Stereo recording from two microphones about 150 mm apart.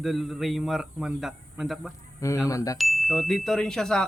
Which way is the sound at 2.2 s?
20° left (ahead or behind).